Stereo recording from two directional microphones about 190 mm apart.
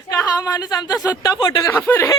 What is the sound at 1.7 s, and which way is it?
Speech, 10° left (ahead or behind).